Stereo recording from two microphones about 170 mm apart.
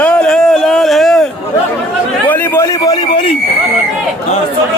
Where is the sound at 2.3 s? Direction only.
10° left (ahead or behind); by 3.4 s 30° left (ahead or behind).